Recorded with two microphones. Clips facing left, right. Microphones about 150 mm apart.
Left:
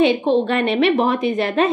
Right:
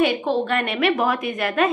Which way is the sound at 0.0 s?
25° left (ahead or behind).